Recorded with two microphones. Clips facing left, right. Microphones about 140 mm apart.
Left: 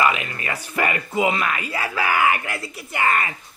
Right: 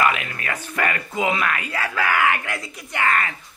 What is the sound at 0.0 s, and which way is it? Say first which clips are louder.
Speech: left 1 dB; centre (ahead or behind).